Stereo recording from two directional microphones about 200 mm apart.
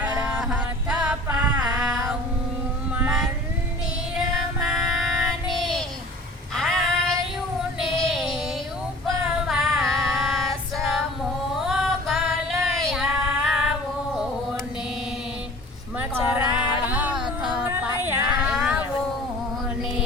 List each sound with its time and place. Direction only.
0.2 s music: 5° right (ahead or behind)
1.5 s a sound: 20° right (ahead or behind)
2.9 s mantra: 5° right (ahead or behind)
4.2 s child singing: centre (ahead or behind)
6.5 s female singing: centre (ahead or behind)
7.9 s music: centre (ahead or behind)
9.0 s female singing: centre (ahead or behind)
11.6 s music: centre (ahead or behind)
12.6 s child singing: centre (ahead or behind)
16.0 s a sound: 10° right (ahead or behind)
17.4 s child singing: 5° right (ahead or behind)